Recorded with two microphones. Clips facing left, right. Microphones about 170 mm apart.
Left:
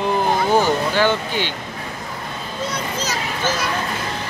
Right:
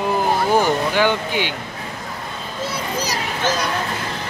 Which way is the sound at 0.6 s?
15° right (ahead or behind).